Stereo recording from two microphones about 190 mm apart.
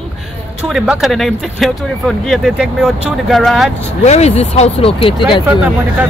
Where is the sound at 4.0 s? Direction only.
35° left (ahead or behind).